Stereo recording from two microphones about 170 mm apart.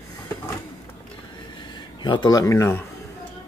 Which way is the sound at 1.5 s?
25° left (ahead or behind).